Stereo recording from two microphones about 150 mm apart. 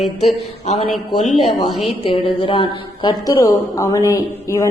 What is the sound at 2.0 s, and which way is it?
Speech, 35° left (ahead or behind).